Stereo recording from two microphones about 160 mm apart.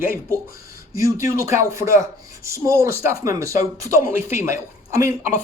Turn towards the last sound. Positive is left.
turn(degrees=-20)  # may be behind; listen again after turning